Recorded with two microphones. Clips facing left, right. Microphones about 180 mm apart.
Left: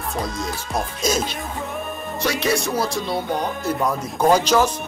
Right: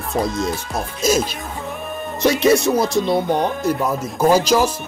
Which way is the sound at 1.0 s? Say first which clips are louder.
Right 6 dB; 10° right (ahead or behind).